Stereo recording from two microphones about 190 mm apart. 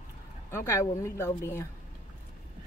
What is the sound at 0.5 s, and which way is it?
A woman's voice, 15° left (ahead or behind).